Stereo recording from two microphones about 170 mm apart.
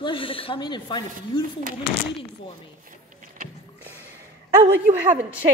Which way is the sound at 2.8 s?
55° right (ahead or behind).